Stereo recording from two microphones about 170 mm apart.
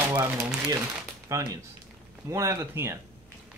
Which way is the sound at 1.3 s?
20° right (ahead or behind).